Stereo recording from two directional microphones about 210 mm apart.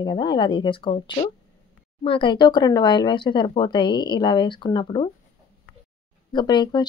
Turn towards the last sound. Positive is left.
turn(degrees=20)  # may be behind; listen again after turning